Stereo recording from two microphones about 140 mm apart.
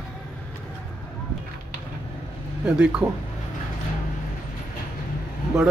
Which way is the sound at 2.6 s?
10° right (ahead or behind).